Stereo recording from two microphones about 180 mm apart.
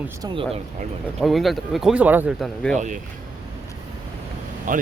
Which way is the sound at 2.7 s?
45° right (ahead or behind).